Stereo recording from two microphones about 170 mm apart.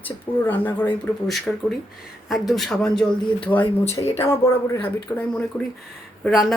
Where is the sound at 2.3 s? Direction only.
Centre (ahead or behind).